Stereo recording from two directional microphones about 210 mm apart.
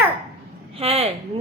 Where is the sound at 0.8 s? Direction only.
30° right (ahead or behind).